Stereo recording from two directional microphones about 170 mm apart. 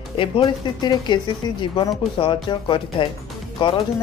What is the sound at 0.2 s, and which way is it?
Speech, 30° left (ahead or behind).